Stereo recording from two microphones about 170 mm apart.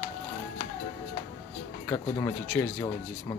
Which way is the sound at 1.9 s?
20° left (ahead or behind).